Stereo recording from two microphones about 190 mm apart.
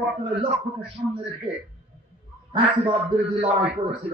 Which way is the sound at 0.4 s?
25° right (ahead or behind).